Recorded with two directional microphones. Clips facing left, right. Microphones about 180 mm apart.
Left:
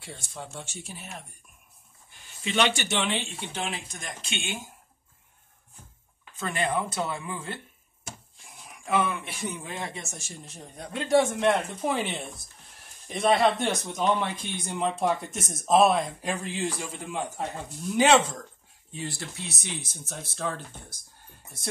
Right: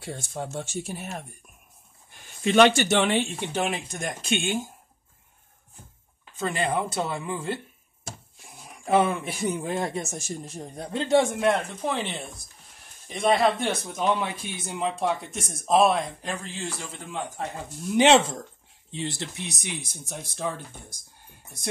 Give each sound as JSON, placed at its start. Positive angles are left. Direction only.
{"t": 0.0, "sound": "speech", "side_deg": -45}
{"t": 2.4, "sound": "speech", "side_deg": -45}
{"t": 6.4, "sound": "speech", "side_deg": -30}
{"t": 8.8, "sound": "speech", "side_deg": -35}
{"t": 11.3, "sound": "speech", "side_deg": 0}
{"t": 16.3, "sound": "speech", "side_deg": 15}
{"t": 17.9, "sound": "speech", "side_deg": -25}